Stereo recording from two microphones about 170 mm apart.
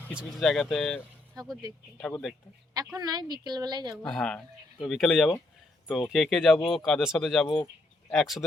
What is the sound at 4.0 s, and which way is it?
Speech, 5° left (ahead or behind).